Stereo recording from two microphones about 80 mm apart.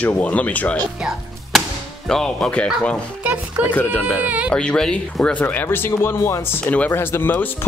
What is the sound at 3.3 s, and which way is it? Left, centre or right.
Speech, centre.